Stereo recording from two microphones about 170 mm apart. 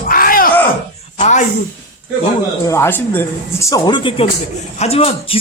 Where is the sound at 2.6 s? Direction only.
15° left (ahead or behind); by 5.4 s 35° left (ahead or behind).